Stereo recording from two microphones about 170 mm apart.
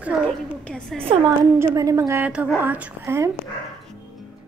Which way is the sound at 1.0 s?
30° right (ahead or behind).